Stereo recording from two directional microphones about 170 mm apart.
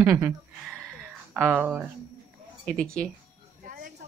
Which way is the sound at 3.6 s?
55° right (ahead or behind).